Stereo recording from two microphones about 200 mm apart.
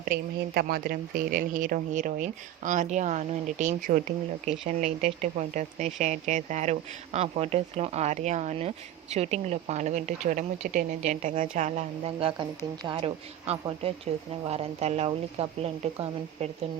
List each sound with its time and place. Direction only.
0.0 s speech: 45° right (ahead or behind); by 16.5 s 30° right (ahead or behind)